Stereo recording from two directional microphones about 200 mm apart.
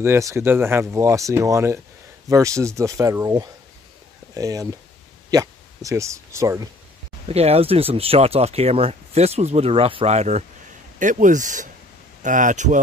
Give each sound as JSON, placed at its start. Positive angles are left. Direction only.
{"t": 0.0, "sound": "speech", "side_deg": -15}
{"t": 7.2, "sound": "speech", "side_deg": -30}